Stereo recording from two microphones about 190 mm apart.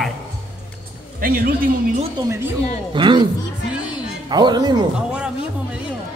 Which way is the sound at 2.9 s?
25° right (ahead or behind).